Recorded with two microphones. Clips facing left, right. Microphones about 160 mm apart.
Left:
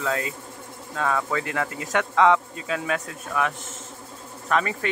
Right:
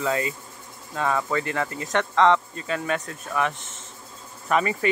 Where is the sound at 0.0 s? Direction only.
5° right (ahead or behind).